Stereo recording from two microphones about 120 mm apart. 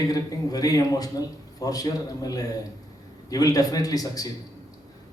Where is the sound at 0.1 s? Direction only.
30° left (ahead or behind).